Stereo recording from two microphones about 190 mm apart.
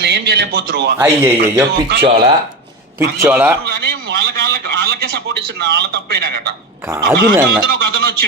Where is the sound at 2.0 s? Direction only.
30° right (ahead or behind).